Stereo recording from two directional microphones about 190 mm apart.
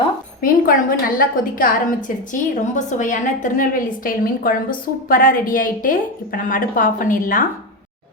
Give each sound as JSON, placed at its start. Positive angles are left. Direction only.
{"t": 0.4, "sound": "a woman's voice", "side_deg": 50}